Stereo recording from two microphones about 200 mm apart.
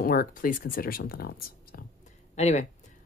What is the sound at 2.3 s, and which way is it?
Speech, 35° left (ahead or behind).